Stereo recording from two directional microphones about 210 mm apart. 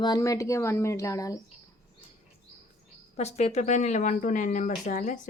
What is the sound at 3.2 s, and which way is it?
Speech, 30° left (ahead or behind).